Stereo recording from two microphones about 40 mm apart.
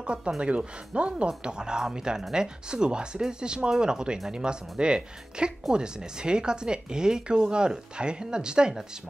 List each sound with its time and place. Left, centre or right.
0.0 s speech: right
1.1 s speech: right